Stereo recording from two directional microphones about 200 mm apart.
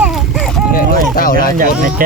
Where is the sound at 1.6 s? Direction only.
45° right (ahead or behind).